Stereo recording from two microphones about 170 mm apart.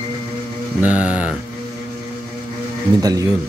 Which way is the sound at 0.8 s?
5° right (ahead or behind).